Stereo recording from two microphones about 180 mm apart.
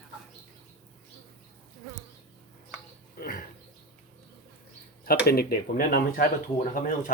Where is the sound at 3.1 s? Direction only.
50° left (ahead or behind).